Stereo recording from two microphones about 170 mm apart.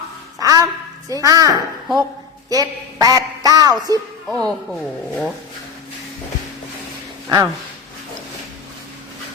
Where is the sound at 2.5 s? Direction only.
20° right (ahead or behind).